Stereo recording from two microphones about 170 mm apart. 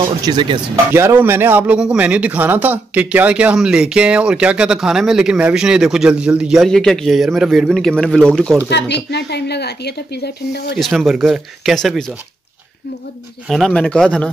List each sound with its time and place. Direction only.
0.0 s speech: 25° right (ahead or behind)
0.9 s a man's voice: 15° right (ahead or behind); by 8.5 s 5° left (ahead or behind)
8.6 s speech: 80° left
10.8 s a man's voice: centre (ahead or behind)
13.5 s a man's voice: centre (ahead or behind)